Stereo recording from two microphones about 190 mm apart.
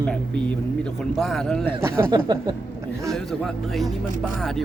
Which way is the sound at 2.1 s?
20° right (ahead or behind).